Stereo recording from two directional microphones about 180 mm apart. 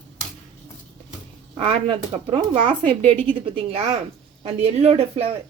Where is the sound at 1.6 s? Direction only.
30° right (ahead or behind).